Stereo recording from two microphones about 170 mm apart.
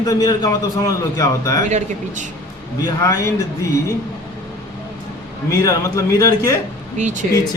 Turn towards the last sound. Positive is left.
turn(degrees=-45)  # may be behind; listen again after turning